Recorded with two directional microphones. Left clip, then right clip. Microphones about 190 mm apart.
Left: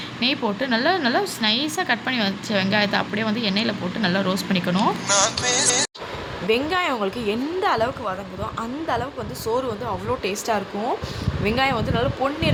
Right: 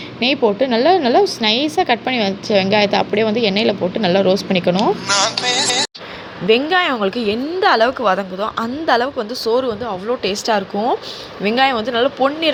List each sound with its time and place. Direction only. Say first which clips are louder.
0.2 s a woman's voice: right 8 dB; 15° right (ahead or behind)
5.0 s music: right 4 dB; centre (ahead or behind)
6.5 s a woman's voice: right 7 dB; 15° right (ahead or behind)